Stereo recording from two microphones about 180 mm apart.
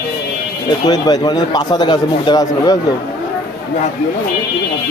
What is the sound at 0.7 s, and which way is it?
Speech, 20° left (ahead or behind).